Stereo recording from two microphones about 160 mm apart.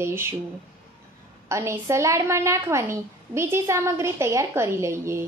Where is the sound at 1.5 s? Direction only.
15° right (ahead or behind).